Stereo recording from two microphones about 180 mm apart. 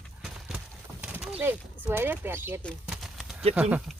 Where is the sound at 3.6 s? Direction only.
5° right (ahead or behind).